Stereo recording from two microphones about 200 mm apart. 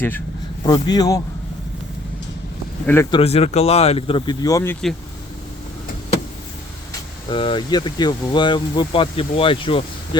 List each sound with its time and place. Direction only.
0.6 s speech: 20° left (ahead or behind)
2.8 s speech: 10° left (ahead or behind)
3.1 s speech: 30° left (ahead or behind); by 4.9 s 5° left (ahead or behind)
7.3 s speech: 25° left (ahead or behind)